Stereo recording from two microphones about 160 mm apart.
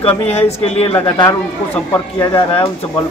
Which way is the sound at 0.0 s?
40° left (ahead or behind).